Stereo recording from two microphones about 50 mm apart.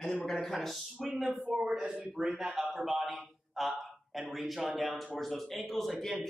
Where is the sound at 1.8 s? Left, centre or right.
Centre.